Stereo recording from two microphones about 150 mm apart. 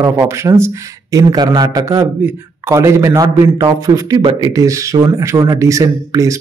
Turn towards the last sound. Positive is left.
turn(degrees=-20)  # may be behind; listen again after turning